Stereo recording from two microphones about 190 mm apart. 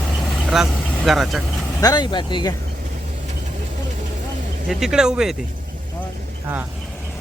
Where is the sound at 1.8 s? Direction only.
20° left (ahead or behind).